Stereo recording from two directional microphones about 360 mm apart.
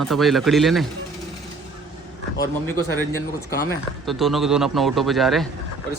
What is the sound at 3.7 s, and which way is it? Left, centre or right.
Speech, centre.